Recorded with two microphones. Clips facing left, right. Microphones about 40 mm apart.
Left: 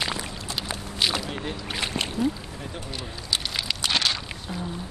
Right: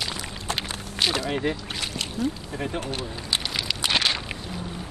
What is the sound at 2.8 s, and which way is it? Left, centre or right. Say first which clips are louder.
Speech: right 5 dB; right.